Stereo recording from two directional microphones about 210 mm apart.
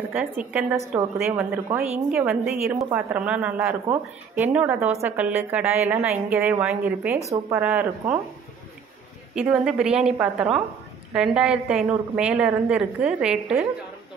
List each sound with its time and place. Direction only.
0.1 s a woman's voice: 5° right (ahead or behind)
7.2 s speech: 20° right (ahead or behind)
7.6 s a woman's voice: 5° right (ahead or behind)
9.3 s a woman's voice: 5° right (ahead or behind)